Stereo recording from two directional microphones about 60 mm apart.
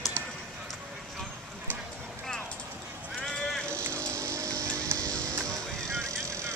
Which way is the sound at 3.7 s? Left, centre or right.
Right.